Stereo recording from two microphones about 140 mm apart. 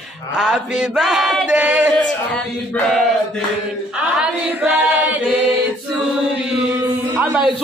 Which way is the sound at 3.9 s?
5° right (ahead or behind).